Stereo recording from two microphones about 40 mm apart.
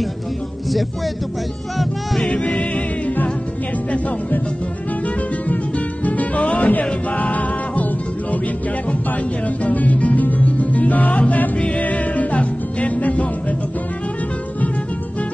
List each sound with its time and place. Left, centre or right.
2.2 s music: left
6.0 s music: left
9.6 s music: left